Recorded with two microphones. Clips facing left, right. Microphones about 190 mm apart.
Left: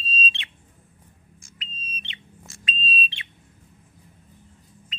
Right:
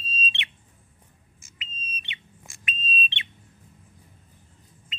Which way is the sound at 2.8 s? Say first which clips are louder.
Left 1 dB; 20° right (ahead or behind).